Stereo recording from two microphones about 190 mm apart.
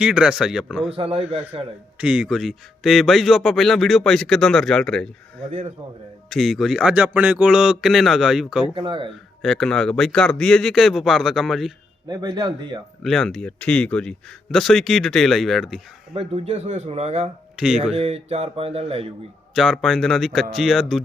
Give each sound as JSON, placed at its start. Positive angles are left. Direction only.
{"t": 0.0, "sound": "speech", "side_deg": -5}
{"t": 0.9, "sound": "speech", "side_deg": -30}
{"t": 2.0, "sound": "speech", "side_deg": -5}
{"t": 6.3, "sound": "speech", "side_deg": 0}
{"t": 8.7, "sound": "speech", "side_deg": -25}
{"t": 9.4, "sound": "speech", "side_deg": 0}
{"t": 12.0, "sound": "speech", "side_deg": -20}
{"t": 13.0, "sound": "speech", "side_deg": 0}
{"t": 16.1, "sound": "speech", "side_deg": -30}
{"t": 17.6, "sound": "speech", "side_deg": -5}
{"t": 17.9, "sound": "speech", "side_deg": -35}
{"t": 19.5, "sound": "speech", "side_deg": 0}